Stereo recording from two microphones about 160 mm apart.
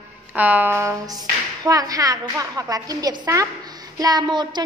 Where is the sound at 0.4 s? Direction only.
10° right (ahead or behind).